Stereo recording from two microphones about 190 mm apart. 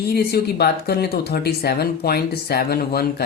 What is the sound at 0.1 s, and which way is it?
Speech, 55° left (ahead or behind).